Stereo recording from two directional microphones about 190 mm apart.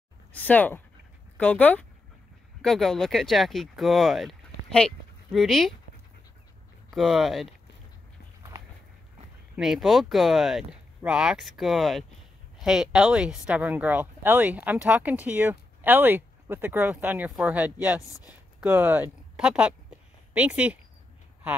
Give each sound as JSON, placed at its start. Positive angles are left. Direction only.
{"t": 0.3, "sound": "speech", "side_deg": 10}
{"t": 6.9, "sound": "speech", "side_deg": 0}
{"t": 8.4, "sound": "a sound", "side_deg": -15}
{"t": 9.6, "sound": "speech", "side_deg": 0}